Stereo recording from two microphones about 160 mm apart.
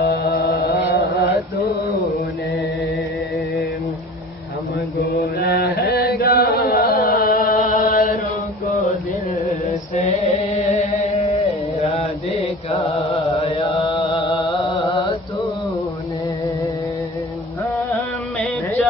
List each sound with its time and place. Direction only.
0.0 s mantra: 90° left
5.0 s chant: 80° left; by 8.2 s 60° left (ahead or behind)
9.3 s chant: 40° left (ahead or behind)
11.8 s mantra: 45° left (ahead or behind)
17.6 s music: centre (ahead or behind)